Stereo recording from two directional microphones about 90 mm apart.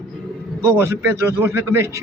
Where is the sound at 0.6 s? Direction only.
30° right (ahead or behind).